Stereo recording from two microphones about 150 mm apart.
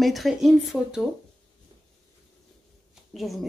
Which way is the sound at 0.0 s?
Centre (ahead or behind).